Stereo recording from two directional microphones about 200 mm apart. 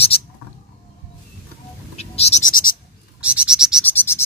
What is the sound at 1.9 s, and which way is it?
Goat, 30° left (ahead or behind).